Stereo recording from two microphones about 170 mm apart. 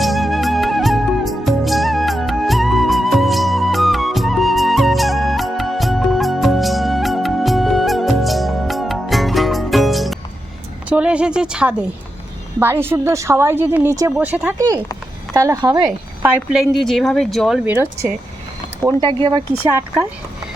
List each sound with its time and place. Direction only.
0.0 s music: centre (ahead or behind)
10.8 s a sound: 5° right (ahead or behind)
12.5 s a woman's voice: 15° right (ahead or behind)
16.2 s speech: 10° right (ahead or behind)
18.8 s speech: 25° right (ahead or behind)